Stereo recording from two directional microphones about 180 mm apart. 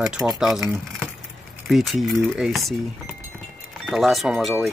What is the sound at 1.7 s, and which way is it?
Wind chime, centre (ahead or behind).